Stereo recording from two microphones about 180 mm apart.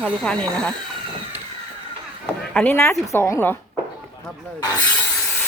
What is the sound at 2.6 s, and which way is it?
A woman's voice, 10° left (ahead or behind).